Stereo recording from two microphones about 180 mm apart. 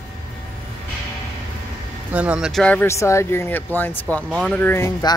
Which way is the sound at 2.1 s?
5° right (ahead or behind).